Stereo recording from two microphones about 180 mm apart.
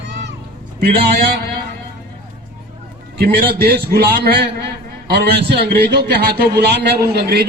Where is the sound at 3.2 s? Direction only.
60° right (ahead or behind).